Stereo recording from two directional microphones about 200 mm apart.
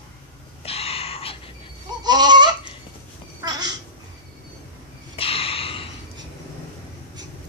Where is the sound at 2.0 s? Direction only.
20° right (ahead or behind).